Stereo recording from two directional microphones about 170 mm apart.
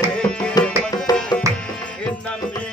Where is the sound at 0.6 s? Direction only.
25° left (ahead or behind).